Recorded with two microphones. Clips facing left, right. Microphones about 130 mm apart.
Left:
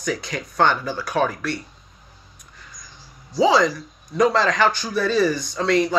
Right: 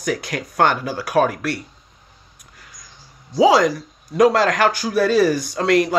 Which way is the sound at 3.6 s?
50° right (ahead or behind).